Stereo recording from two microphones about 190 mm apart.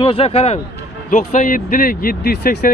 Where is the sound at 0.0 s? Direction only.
30° left (ahead or behind).